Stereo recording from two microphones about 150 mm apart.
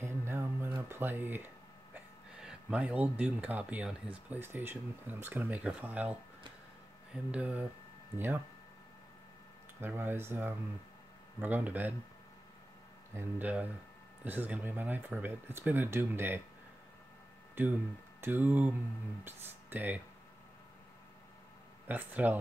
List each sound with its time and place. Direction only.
0.0 s a sound: 15° right (ahead or behind)
0.8 s speech: 15° right (ahead or behind)
7.2 s speech: 10° right (ahead or behind)
9.8 s speech: 15° right (ahead or behind)
13.1 s speech: 15° right (ahead or behind)
17.6 s speech: 15° right (ahead or behind)
21.8 s speech: 10° right (ahead or behind)